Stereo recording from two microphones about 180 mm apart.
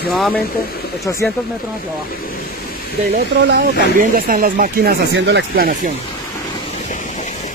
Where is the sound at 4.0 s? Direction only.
50° right (ahead or behind).